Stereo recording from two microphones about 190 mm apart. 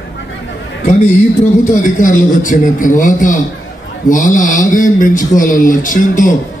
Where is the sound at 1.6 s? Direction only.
40° left (ahead or behind).